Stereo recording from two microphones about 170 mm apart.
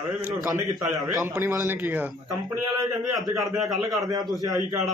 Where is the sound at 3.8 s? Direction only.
20° right (ahead or behind).